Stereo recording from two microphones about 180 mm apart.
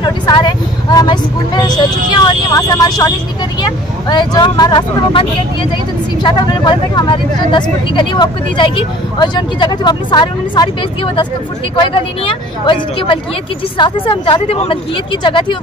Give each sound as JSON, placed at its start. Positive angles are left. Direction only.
{"t": 0.0, "sound": "speech", "side_deg": 25}